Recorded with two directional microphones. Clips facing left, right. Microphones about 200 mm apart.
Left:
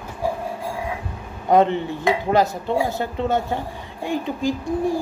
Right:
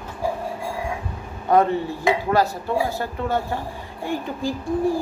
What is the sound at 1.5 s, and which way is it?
A woman's voice, 20° left (ahead or behind).